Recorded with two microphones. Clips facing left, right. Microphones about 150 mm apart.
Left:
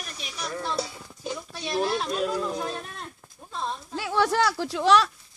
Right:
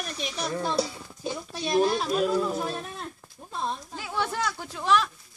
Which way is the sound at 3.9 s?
80° left.